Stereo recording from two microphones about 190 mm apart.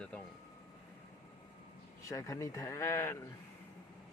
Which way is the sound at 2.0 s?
15° left (ahead or behind).